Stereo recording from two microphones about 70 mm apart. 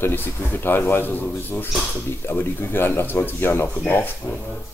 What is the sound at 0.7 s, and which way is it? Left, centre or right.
Speech, left.